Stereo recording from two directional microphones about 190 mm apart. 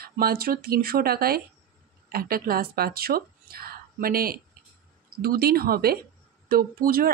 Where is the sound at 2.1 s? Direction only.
50° right (ahead or behind).